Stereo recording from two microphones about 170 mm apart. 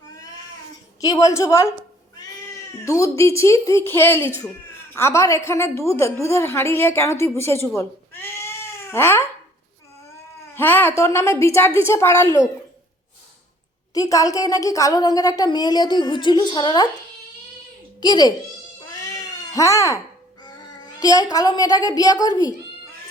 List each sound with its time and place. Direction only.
1.0 s a woman's voice: 20° left (ahead or behind)
2.8 s a woman's voice: 20° left (ahead or behind)
7.8 s cat: 15° left (ahead or behind)
10.5 s a woman's voice: 10° left (ahead or behind)
13.9 s a woman's voice: 20° left (ahead or behind)
18.0 s a woman's voice: 25° left (ahead or behind)
18.9 s cat: 20° left (ahead or behind)
21.0 s a woman's voice: 20° left (ahead or behind)